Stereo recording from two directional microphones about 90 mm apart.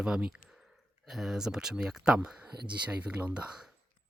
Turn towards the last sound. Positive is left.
turn(degrees=-15)  # may be behind; listen again after turning